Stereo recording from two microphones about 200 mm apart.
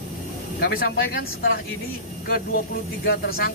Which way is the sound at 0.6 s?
50° left (ahead or behind).